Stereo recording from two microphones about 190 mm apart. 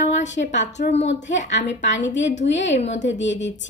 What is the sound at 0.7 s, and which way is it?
Speech, 40° left (ahead or behind).